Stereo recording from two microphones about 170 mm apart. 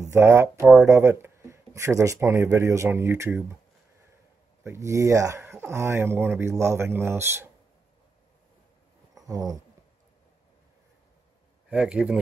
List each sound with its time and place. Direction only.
0.1 s speech: 15° right (ahead or behind)
4.6 s speech: 15° right (ahead or behind)
9.1 s a sound: 20° right (ahead or behind)
11.7 s speech: 5° right (ahead or behind)